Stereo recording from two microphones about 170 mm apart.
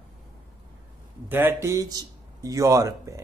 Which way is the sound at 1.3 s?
15° right (ahead or behind).